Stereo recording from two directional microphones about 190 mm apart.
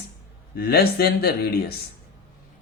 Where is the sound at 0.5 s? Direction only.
55° left (ahead or behind).